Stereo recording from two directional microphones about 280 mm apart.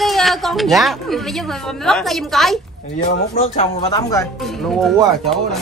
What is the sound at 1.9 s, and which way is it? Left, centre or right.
Speech, centre.